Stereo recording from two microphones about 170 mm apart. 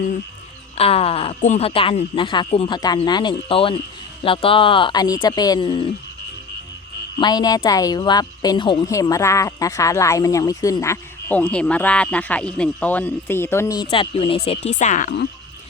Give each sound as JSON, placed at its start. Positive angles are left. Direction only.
{"t": 0.8, "sound": "speech", "side_deg": 35}
{"t": 7.2, "sound": "speech", "side_deg": 25}
{"t": 14.8, "sound": "speech", "side_deg": 45}